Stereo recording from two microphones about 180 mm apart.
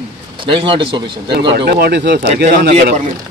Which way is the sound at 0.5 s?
30° right (ahead or behind).